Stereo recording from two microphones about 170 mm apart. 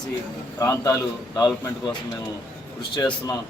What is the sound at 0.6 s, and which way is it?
Speech, 20° left (ahead or behind).